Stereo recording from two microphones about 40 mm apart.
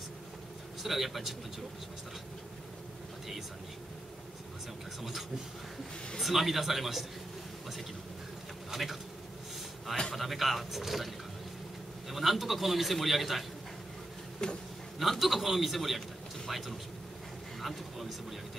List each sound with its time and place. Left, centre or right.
0.8 s a man's voice: centre
6.1 s a man's voice: centre
8.6 s insect: centre
10.1 s a man's voice: centre
12.1 s a man's voice: centre
14.4 s speech: centre
15.0 s a man's voice: centre